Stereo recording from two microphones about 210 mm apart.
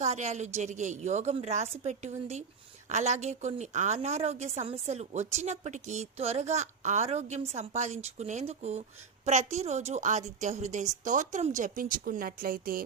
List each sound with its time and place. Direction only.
0.0 s a woman's voice: 30° right (ahead or behind)